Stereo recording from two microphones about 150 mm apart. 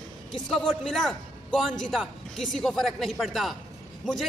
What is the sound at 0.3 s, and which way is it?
A man's voice, centre (ahead or behind).